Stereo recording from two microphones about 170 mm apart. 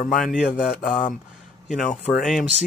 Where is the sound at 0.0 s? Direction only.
50° left (ahead or behind).